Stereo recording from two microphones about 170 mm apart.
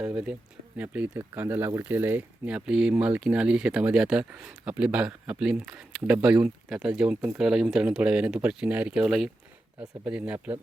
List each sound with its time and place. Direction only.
0.0 s speech: 10° right (ahead or behind)